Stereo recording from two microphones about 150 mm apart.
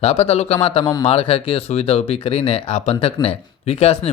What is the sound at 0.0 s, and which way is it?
Speech, 45° left (ahead or behind).